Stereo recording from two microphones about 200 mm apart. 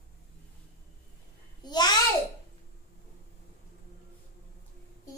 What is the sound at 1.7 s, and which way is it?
Babbling, 20° left (ahead or behind).